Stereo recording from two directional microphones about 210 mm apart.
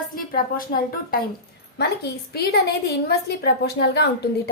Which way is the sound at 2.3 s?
50° left (ahead or behind).